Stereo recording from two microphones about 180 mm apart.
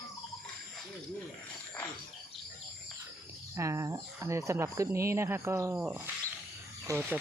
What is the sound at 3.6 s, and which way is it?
Speech, 15° right (ahead or behind).